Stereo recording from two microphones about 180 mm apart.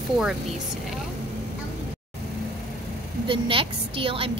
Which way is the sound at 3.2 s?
30° right (ahead or behind).